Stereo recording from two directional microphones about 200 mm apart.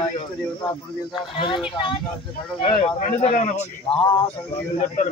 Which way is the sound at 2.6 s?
40° left (ahead or behind).